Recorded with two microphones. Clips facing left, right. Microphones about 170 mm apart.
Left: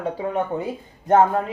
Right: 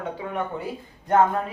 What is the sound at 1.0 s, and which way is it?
Speech, 25° left (ahead or behind).